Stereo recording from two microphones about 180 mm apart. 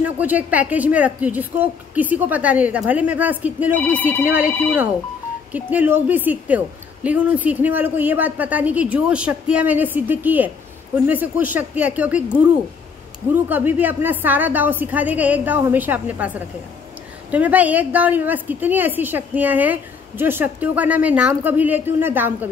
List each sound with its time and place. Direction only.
0.0 s a woman's voice: 10° right (ahead or behind)
5.5 s a woman's voice: 10° right (ahead or behind)
13.3 s a woman's voice: 10° right (ahead or behind)